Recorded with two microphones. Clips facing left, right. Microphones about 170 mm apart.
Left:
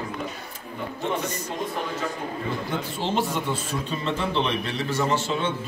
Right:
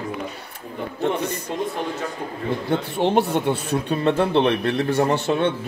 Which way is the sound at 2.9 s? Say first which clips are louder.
Right 7 dB; 60° right (ahead or behind).